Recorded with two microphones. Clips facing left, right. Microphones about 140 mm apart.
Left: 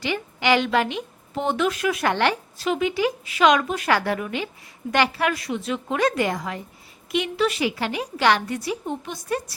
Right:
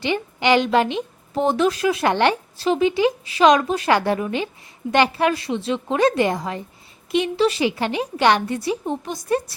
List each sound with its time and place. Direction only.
0.0 s a woman's voice: 25° right (ahead or behind)
1.4 s a woman's voice: 35° right (ahead or behind)